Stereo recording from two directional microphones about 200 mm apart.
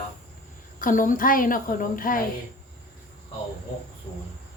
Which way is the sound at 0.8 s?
45° left (ahead or behind).